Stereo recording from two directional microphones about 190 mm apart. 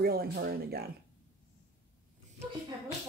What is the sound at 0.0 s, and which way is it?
Speech, 55° right (ahead or behind).